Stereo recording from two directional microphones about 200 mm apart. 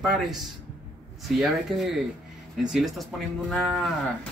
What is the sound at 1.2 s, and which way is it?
Moo, centre (ahead or behind).